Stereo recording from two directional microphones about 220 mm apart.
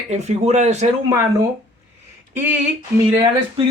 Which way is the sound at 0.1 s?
30° right (ahead or behind).